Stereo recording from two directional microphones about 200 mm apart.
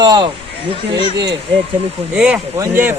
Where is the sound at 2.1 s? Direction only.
5° right (ahead or behind).